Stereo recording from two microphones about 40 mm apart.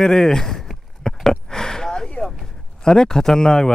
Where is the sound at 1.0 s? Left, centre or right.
Centre.